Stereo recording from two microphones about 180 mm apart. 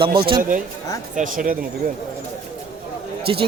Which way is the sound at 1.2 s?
50° right (ahead or behind).